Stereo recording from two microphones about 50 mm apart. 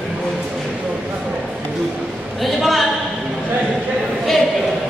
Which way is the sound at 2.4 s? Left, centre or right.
Centre.